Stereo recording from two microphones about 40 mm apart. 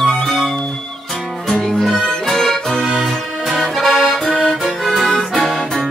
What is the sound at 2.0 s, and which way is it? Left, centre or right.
Music, centre.